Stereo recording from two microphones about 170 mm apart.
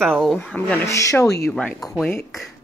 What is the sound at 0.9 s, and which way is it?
Speech, 20° left (ahead or behind).